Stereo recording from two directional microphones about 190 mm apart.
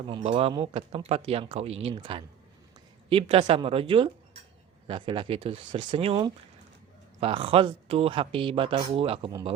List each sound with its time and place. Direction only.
0.1 s speech: 30° right (ahead or behind)